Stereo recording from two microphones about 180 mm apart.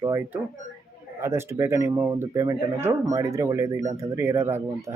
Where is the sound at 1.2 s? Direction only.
15° right (ahead or behind).